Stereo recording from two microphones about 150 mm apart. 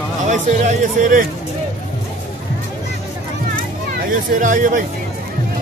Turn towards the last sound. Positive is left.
turn(degrees=-60)  # may be behind; listen again after turning